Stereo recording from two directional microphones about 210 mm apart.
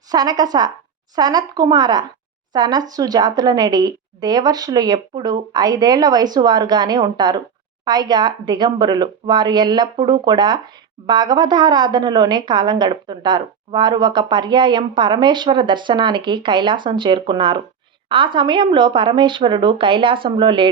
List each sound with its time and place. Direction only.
0.1 s a woman's voice: 20° right (ahead or behind)